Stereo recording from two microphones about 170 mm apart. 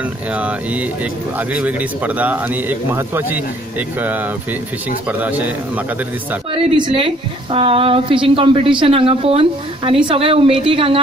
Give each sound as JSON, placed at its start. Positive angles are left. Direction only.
{"t": 1.5, "sound": "a man's voice", "side_deg": -10}
{"t": 6.5, "sound": "a woman's voice", "side_deg": -30}